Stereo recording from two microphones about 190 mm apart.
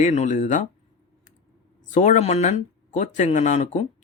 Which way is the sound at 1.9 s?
40° left (ahead or behind).